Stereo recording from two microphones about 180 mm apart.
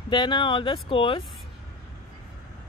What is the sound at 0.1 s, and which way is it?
Speech, 25° left (ahead or behind).